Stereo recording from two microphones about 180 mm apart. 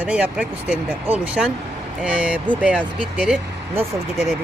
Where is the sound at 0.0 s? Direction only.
5° right (ahead or behind).